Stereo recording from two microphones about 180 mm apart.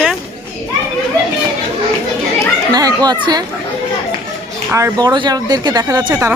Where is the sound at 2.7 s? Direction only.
20° right (ahead or behind).